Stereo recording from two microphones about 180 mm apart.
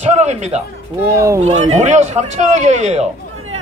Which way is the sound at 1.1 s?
15° right (ahead or behind).